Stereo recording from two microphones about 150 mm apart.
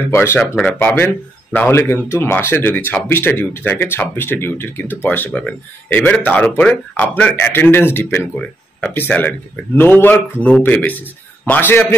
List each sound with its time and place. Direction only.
0.1 s speech: 15° left (ahead or behind)